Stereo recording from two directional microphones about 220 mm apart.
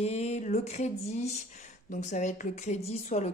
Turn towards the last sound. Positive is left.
turn(degrees=30)  # may be behind; listen again after turning